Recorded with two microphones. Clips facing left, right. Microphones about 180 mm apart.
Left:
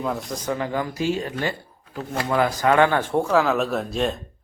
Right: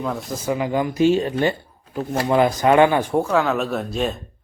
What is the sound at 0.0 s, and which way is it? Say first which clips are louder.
Speech: right 1 dB; centre (ahead or behind).